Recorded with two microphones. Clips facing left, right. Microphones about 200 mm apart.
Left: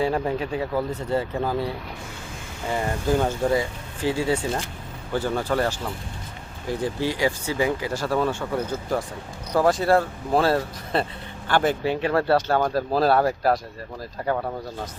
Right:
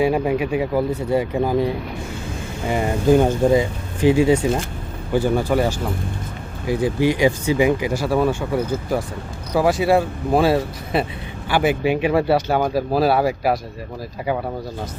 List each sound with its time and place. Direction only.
0.0 s speech: 10° right (ahead or behind)